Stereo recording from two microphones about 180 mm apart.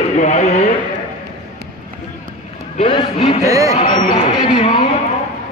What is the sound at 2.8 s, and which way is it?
Speech, 35° left (ahead or behind).